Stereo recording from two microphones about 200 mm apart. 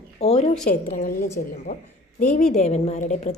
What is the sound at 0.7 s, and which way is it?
A woman's voice, 45° left (ahead or behind).